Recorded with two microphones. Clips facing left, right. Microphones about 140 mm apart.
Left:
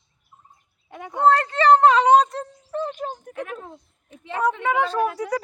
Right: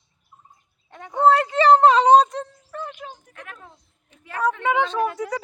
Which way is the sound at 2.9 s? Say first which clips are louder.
Left 8 dB; 45° left (ahead or behind).